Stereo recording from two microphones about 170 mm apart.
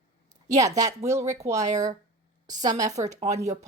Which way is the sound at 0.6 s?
20° right (ahead or behind).